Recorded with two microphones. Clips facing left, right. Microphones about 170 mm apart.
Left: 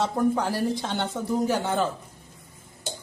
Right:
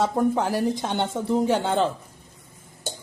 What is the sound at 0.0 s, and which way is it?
A man's voice, 20° right (ahead or behind).